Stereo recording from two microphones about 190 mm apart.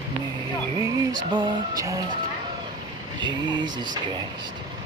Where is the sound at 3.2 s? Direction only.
25° right (ahead or behind).